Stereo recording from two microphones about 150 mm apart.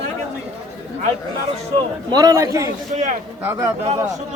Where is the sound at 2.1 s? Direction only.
25° right (ahead or behind).